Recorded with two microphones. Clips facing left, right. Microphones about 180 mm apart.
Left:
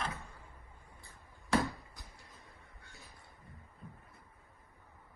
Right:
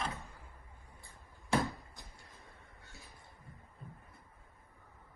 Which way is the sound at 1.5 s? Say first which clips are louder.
Left 1 dB; 25° right (ahead or behind).